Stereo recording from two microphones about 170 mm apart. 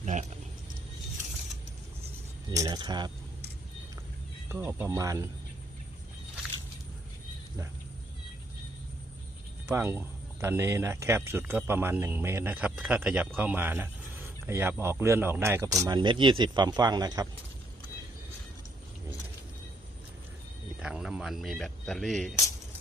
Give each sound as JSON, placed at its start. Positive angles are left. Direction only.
{"t": 0.0, "sound": "a sound", "side_deg": -45}
{"t": 2.5, "sound": "speech", "side_deg": -20}
{"t": 4.4, "sound": "speech", "side_deg": -10}
{"t": 9.6, "sound": "speech", "side_deg": -15}
{"t": 20.8, "sound": "speech", "side_deg": -5}